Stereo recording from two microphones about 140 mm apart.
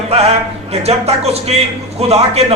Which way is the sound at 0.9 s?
50° right (ahead or behind).